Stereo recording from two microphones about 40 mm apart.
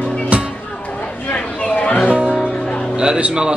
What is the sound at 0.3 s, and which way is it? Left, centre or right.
Music, right.